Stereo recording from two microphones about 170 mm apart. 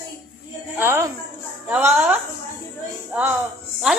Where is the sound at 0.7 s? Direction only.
15° right (ahead or behind).